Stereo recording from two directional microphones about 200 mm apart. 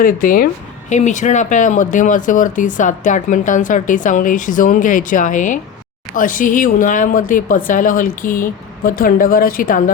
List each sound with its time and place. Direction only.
0.0 s a woman's voice: 45° left (ahead or behind)